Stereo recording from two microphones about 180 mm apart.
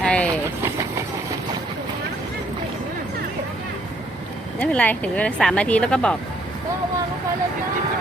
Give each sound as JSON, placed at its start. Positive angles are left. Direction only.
{"t": 0.0, "sound": "vehicle", "side_deg": 5}
{"t": 0.6, "sound": "train", "side_deg": -15}
{"t": 4.6, "sound": "speech", "side_deg": 10}